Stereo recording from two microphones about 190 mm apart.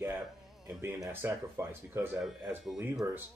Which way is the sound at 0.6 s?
5° right (ahead or behind).